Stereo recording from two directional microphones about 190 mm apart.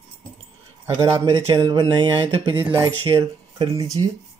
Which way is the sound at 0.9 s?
20° right (ahead or behind).